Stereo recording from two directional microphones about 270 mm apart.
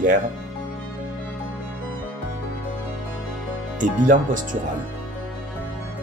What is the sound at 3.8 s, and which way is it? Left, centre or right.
Speech, right.